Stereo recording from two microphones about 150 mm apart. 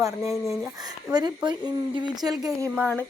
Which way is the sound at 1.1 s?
30° right (ahead or behind).